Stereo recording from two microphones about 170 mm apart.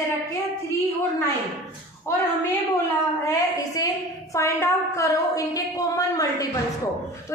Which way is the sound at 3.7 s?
20° left (ahead or behind).